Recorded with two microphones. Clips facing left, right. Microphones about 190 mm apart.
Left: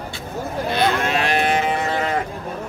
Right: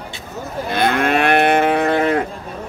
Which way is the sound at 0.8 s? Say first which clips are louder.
Right 5 dB; 55° right (ahead or behind).